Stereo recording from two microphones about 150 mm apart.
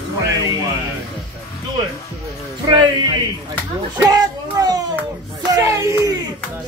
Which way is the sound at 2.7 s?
25° right (ahead or behind).